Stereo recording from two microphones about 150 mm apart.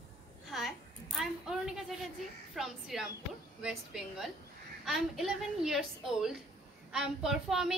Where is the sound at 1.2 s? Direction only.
Centre (ahead or behind).